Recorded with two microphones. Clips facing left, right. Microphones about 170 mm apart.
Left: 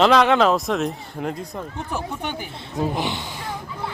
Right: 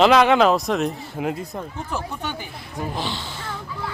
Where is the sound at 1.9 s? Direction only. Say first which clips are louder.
Left 1 dB; 15° left (ahead or behind).